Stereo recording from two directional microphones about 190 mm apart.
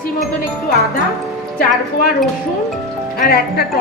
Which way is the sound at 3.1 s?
55° left (ahead or behind).